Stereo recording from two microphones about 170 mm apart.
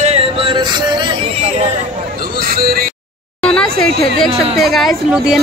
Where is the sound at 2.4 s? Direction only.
60° right (ahead or behind).